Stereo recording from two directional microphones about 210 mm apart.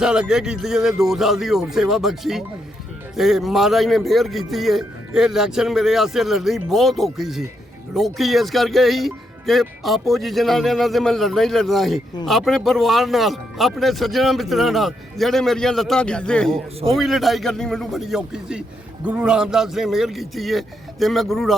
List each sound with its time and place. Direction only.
0.0 s speech: 5° right (ahead or behind)